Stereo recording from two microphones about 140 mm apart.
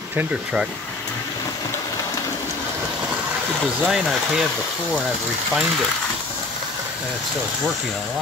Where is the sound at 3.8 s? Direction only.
Centre (ahead or behind).